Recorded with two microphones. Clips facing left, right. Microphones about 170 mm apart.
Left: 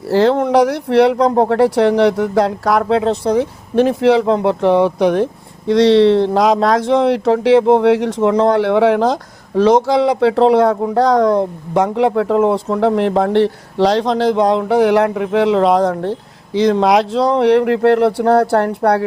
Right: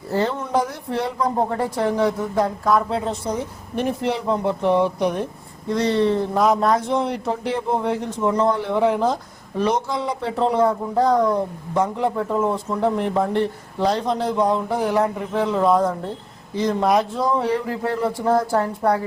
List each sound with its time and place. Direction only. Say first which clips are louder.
0.1 s speech: left 9 dB; 90° left; by 19.0 s 70° left (ahead or behind)